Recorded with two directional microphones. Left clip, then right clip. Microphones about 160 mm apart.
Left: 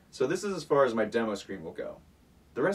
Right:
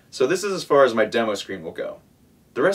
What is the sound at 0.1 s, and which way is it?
Speech, 25° right (ahead or behind).